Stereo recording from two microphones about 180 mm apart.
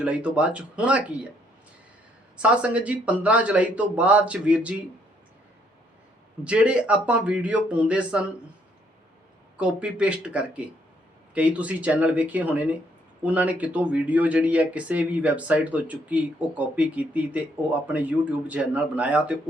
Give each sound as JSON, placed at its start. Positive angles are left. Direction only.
{"t": 0.0, "sound": "speech", "side_deg": -5}
{"t": 2.4, "sound": "speech", "side_deg": -5}
{"t": 6.4, "sound": "speech", "side_deg": -5}
{"t": 9.6, "sound": "speech", "side_deg": -5}